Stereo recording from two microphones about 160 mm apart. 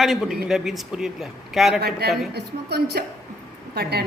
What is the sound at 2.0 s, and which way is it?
A woman's voice, 90° right.